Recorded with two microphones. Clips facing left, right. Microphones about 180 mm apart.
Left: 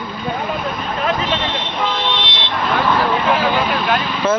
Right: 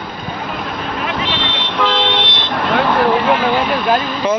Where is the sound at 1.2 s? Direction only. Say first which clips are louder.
Even; 75° right (ahead or behind); by 2.5 s 50° right (ahead or behind).